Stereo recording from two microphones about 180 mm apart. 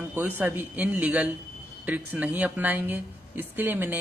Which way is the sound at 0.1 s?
10° right (ahead or behind).